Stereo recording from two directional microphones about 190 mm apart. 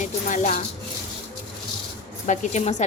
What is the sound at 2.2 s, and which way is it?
Speech, 35° left (ahead or behind).